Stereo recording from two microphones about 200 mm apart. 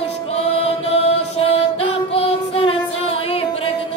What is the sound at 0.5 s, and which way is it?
Music, 30° left (ahead or behind).